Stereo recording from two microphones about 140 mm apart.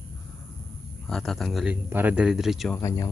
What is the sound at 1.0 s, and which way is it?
Speech, centre (ahead or behind).